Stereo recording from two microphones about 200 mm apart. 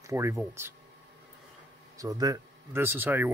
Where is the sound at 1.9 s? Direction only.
20° right (ahead or behind).